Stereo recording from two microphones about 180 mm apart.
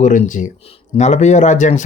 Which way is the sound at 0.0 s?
45° left (ahead or behind).